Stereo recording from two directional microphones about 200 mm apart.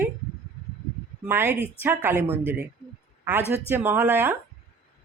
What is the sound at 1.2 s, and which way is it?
A woman's voice, 10° right (ahead or behind).